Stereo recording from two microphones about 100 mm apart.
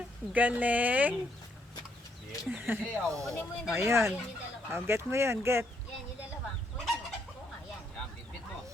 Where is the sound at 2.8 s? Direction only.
10° left (ahead or behind).